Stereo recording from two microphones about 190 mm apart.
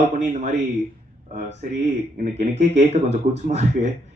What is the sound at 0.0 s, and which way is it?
Speech, 40° right (ahead or behind).